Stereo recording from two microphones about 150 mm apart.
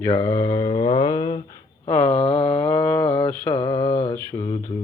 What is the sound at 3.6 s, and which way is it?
Mantra, 30° left (ahead or behind).